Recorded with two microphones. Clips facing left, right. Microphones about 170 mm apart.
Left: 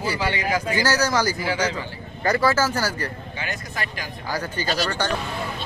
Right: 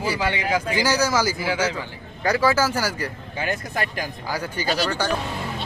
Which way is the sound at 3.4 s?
50° right (ahead or behind).